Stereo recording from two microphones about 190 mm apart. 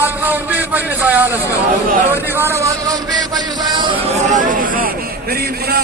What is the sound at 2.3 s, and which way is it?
Speech, 15° right (ahead or behind).